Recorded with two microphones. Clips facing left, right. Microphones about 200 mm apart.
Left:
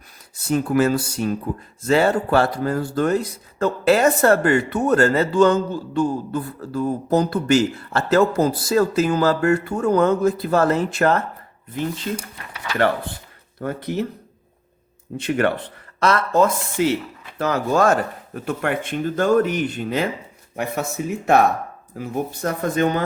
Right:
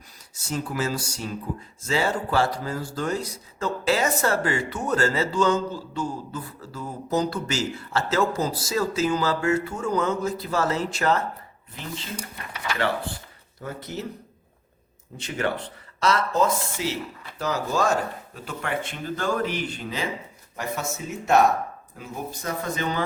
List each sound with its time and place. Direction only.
0.3 s speech: 60° left (ahead or behind)
13.6 s speech: 60° left (ahead or behind)
15.2 s speech: 60° left (ahead or behind)